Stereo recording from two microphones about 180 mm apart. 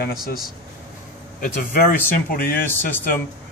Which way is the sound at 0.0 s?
55° left (ahead or behind).